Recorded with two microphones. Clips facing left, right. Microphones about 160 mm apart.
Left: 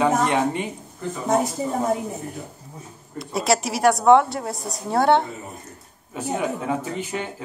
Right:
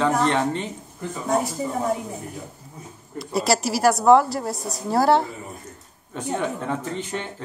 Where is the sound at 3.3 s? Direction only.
Centre (ahead or behind).